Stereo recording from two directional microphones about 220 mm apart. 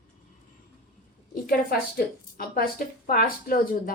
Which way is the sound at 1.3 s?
40° left (ahead or behind).